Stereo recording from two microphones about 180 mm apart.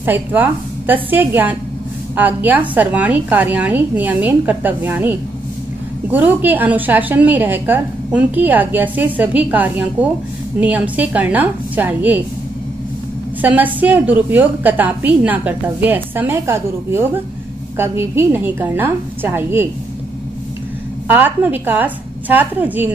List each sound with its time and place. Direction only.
0.0 s a woman's voice: 10° right (ahead or behind)
13.4 s a woman's voice: 10° right (ahead or behind)
21.1 s a woman's voice: 10° right (ahead or behind)